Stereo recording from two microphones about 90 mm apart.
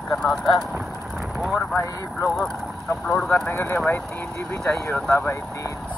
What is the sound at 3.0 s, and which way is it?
Speech, 5° left (ahead or behind).